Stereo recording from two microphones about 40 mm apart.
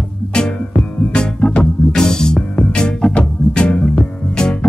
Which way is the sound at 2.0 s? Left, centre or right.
Centre.